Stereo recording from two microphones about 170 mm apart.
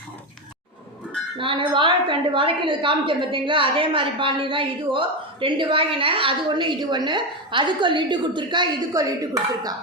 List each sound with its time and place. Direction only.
1.4 s a woman's voice: 30° right (ahead or behind)